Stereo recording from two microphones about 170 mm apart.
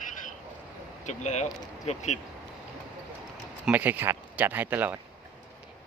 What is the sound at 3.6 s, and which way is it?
Speech, 10° right (ahead or behind).